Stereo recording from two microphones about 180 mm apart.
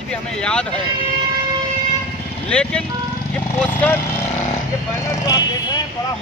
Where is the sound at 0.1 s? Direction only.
5° left (ahead or behind).